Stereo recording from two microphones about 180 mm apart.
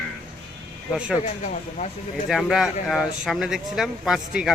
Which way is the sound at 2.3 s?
Centre (ahead or behind).